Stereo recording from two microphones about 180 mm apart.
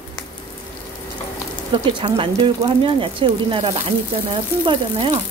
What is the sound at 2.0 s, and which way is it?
Speech, 25° right (ahead or behind).